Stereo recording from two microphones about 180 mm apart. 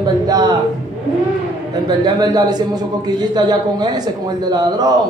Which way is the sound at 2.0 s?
20° right (ahead or behind).